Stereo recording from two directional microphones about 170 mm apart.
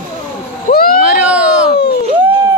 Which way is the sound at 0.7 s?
50° left (ahead or behind).